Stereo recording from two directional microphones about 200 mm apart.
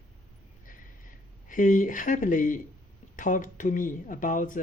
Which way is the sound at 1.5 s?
40° left (ahead or behind).